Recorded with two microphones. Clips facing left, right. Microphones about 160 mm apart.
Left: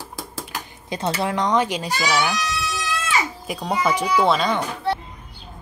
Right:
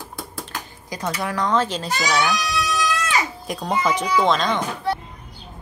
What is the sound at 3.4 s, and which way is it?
A child's voice, 5° left (ahead or behind).